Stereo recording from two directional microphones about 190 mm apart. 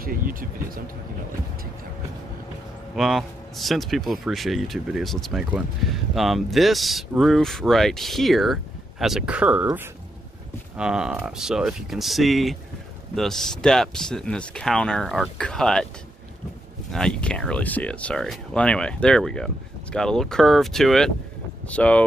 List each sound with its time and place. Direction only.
0.0 s speech: 50° right (ahead or behind)
3.0 s speech: centre (ahead or behind)
16.9 s speech: 5° left (ahead or behind)